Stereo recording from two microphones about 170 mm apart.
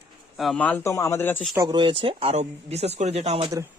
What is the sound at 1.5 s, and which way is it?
Speech, 25° right (ahead or behind).